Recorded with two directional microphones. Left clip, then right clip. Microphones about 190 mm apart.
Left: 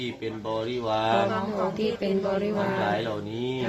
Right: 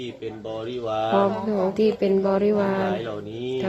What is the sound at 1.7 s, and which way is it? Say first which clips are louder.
Speech: right 6 dB; 45° right (ahead or behind).